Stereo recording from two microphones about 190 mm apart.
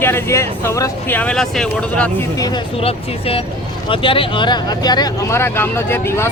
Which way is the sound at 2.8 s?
30° left (ahead or behind).